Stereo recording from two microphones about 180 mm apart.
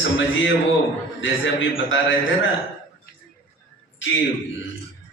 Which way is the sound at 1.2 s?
90° left.